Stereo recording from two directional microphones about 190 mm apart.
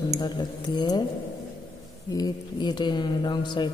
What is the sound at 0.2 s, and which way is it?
Speech, 25° left (ahead or behind).